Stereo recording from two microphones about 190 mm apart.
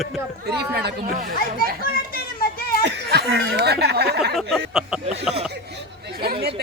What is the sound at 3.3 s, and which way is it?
Speech, 65° right (ahead or behind).